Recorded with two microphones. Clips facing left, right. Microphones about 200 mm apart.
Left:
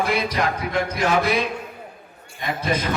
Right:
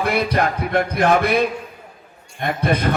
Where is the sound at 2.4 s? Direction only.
60° right (ahead or behind).